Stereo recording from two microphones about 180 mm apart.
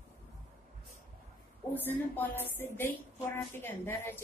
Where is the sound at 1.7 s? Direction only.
10° left (ahead or behind).